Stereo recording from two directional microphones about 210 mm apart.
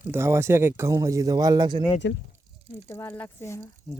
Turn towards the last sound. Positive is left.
turn(degrees=10)  # may be behind; listen again after turning